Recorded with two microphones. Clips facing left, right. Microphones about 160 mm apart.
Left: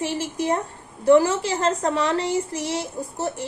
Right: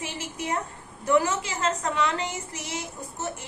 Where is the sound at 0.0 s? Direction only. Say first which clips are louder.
Left 9 dB; 30° left (ahead or behind).